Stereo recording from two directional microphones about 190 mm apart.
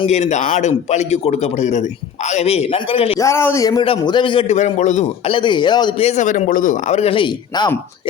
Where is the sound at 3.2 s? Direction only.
15° left (ahead or behind).